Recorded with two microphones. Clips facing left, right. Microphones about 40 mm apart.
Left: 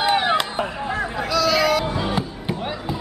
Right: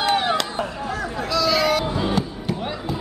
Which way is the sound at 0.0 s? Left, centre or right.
Centre.